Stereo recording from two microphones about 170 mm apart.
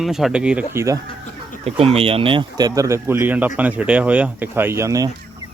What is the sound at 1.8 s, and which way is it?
Speech, 35° right (ahead or behind).